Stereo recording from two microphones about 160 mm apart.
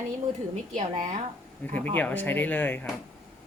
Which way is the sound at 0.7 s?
50° right (ahead or behind).